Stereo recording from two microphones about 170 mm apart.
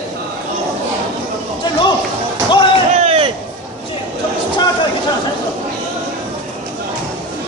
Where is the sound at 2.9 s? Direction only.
40° right (ahead or behind).